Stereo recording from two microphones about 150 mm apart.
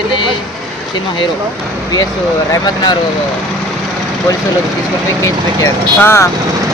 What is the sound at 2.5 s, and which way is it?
Speech, 30° left (ahead or behind).